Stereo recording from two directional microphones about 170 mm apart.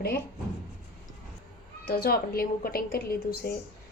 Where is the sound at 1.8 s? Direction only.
65° left (ahead or behind).